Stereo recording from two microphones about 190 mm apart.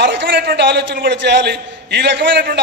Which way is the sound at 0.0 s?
70° right (ahead or behind).